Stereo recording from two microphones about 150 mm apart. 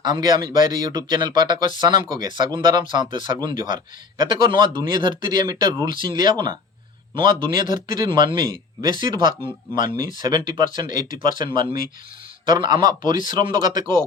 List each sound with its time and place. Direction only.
0.0 s speech: 30° right (ahead or behind)